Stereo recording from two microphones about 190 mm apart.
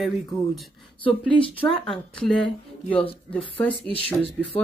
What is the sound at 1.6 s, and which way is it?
A woman's voice, 5° left (ahead or behind).